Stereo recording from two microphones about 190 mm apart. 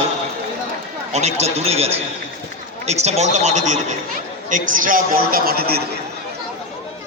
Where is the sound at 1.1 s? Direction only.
35° right (ahead or behind); by 5.9 s 55° right (ahead or behind).